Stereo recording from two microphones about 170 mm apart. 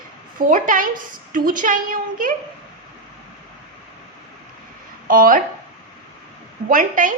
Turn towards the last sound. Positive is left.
turn(degrees=-50)  # may be behind; listen again after turning